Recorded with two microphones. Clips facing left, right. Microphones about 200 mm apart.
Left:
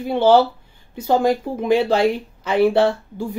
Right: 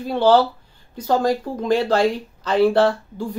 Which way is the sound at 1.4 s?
10° left (ahead or behind).